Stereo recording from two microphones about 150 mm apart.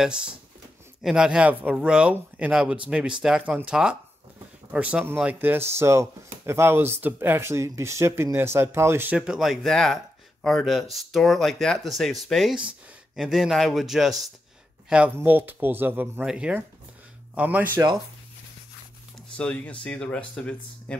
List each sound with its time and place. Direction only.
0.0 s speech: 5° right (ahead or behind)
15.1 s speech: 10° right (ahead or behind)
19.3 s speech: 10° left (ahead or behind)